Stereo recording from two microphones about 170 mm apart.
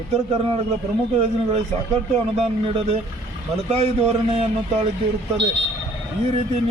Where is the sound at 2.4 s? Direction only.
35° right (ahead or behind).